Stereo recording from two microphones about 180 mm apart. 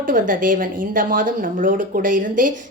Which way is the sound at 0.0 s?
50° right (ahead or behind).